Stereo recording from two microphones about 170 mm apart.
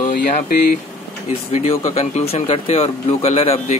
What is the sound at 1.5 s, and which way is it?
Speech, 40° left (ahead or behind).